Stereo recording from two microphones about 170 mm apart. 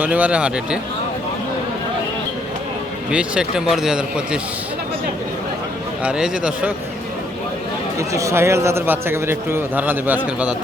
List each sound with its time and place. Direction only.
0.0 s a man's voice: 10° right (ahead or behind)
3.1 s speech: 5° right (ahead or behind)
6.0 s a man's voice: 5° right (ahead or behind)
7.9 s a man's voice: 20° right (ahead or behind)